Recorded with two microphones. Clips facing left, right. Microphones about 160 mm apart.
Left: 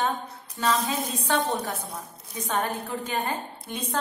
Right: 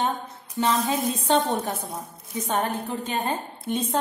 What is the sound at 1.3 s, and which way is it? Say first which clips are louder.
Speech: right 3 dB; 25° right (ahead or behind).